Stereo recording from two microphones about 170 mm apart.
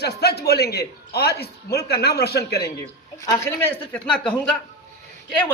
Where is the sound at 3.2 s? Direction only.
10° left (ahead or behind).